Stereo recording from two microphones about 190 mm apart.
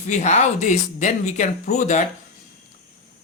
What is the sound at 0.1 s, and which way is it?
Speech, 40° left (ahead or behind).